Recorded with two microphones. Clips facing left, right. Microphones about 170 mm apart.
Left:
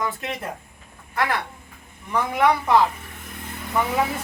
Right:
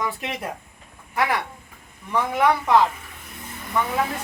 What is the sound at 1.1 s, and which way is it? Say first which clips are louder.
A woman's voice: right 1 dB; 10° right (ahead or behind).